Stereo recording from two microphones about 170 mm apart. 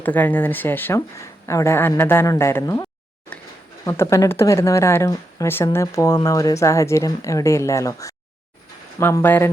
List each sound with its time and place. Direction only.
0.0 s a woman's voice: 10° left (ahead or behind)
3.3 s a sound: 5° left (ahead or behind)
3.8 s a woman's voice: 20° left (ahead or behind)